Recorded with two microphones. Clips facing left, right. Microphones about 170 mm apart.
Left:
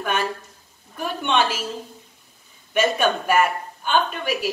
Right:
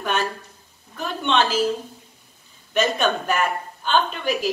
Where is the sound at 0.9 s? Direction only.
10° left (ahead or behind).